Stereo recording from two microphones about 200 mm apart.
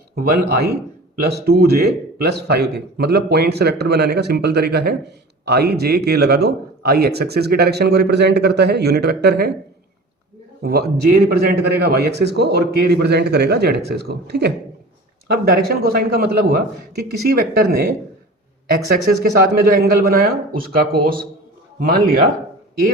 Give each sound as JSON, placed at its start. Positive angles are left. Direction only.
{"t": 0.2, "sound": "speech", "side_deg": -50}
{"t": 10.6, "sound": "a man's voice", "side_deg": -50}
{"t": 19.2, "sound": "speech", "side_deg": -50}